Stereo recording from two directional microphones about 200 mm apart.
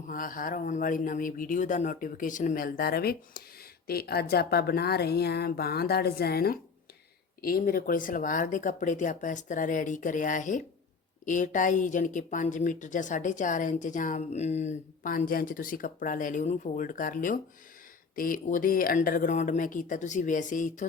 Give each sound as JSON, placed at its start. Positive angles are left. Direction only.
{"t": 0.1, "sound": "a woman's voice", "side_deg": 45}